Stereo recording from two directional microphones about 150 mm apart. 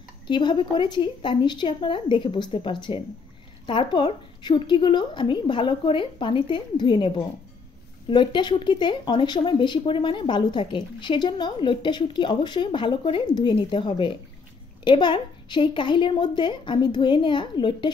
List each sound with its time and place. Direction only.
0.3 s speech: 30° left (ahead or behind)
8.1 s speech: 30° left (ahead or behind)